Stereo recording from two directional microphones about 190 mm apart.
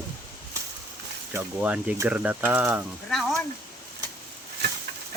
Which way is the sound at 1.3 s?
10° right (ahead or behind).